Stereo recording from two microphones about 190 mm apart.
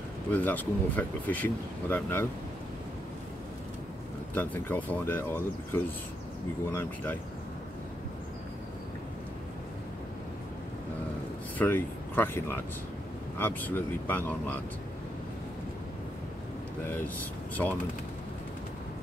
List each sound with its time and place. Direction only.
0.3 s speech: 10° left (ahead or behind)
4.4 s speech: 10° left (ahead or behind)
11.5 s speech: 10° left (ahead or behind)
16.8 s speech: 10° left (ahead or behind)